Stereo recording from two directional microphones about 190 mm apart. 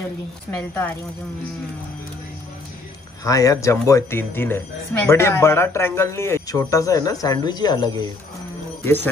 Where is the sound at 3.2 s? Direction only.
15° left (ahead or behind).